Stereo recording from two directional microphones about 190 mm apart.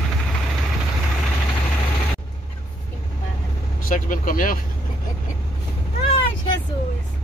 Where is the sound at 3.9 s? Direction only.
45° left (ahead or behind).